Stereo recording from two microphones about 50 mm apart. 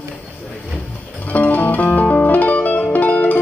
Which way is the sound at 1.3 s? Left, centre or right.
Left.